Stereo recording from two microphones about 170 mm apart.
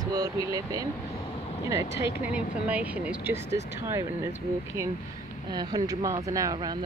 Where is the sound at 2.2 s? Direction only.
10° right (ahead or behind).